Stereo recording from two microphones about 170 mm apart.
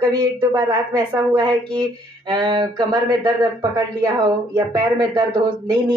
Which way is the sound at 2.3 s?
25° right (ahead or behind).